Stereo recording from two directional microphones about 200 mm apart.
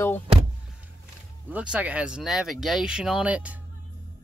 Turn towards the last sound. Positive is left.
turn(degrees=-5)  # may be behind; listen again after turning